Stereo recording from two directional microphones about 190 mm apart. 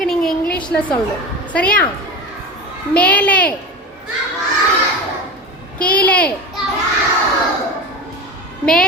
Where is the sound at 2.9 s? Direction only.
10° left (ahead or behind).